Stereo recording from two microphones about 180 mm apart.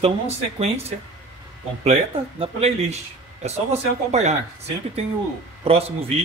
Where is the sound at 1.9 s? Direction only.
35° right (ahead or behind).